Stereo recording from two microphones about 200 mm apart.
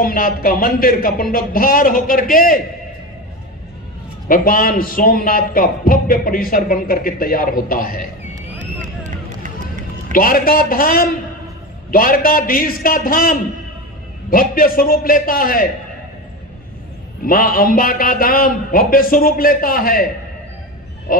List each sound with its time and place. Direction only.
0.0 s a man's voice: 45° left (ahead or behind)
4.3 s a man's voice: 45° left (ahead or behind)
9.4 s run: 40° right (ahead or behind)
10.1 s a man's voice: 45° left (ahead or behind)
17.2 s a man's voice: 45° left (ahead or behind)
21.1 s a sound: 45° left (ahead or behind)